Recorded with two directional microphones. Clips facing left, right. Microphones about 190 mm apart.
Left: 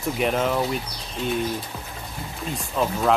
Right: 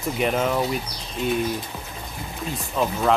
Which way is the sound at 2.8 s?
Centre (ahead or behind).